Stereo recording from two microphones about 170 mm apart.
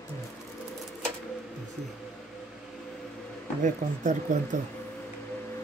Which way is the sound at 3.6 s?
50° right (ahead or behind).